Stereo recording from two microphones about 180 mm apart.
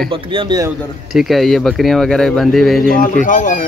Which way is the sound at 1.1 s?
Centre (ahead or behind).